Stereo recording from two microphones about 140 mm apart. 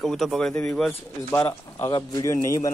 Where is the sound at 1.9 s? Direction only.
30° left (ahead or behind).